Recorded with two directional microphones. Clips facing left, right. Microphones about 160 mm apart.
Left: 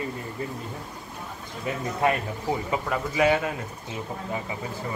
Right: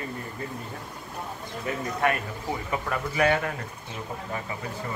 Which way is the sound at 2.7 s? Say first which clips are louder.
Right 1 dB; 15° left (ahead or behind).